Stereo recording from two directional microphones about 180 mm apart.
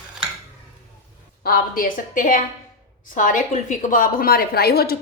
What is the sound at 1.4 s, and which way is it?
A woman's voice, 55° left (ahead or behind).